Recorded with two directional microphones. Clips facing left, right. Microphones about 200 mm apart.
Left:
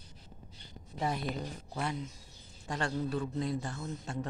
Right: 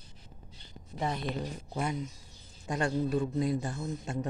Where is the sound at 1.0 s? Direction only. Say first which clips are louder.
Right 1 dB; 5° left (ahead or behind).